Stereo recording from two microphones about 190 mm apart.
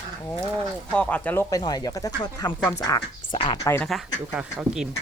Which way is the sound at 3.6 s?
10° left (ahead or behind).